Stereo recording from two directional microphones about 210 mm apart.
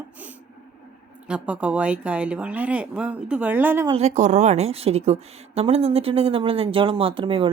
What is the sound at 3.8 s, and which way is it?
A woman's voice, 30° right (ahead or behind).